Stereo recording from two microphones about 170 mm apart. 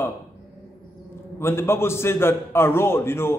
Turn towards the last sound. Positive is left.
turn(degrees=15)  # may be behind; listen again after turning